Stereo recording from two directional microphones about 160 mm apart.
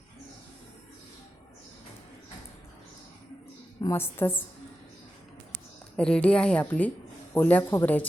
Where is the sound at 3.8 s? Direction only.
15° left (ahead or behind).